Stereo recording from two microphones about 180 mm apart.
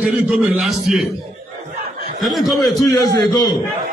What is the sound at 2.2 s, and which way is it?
Speech, centre (ahead or behind).